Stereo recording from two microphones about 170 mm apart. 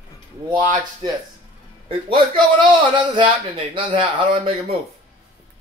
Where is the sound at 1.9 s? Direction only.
30° right (ahead or behind).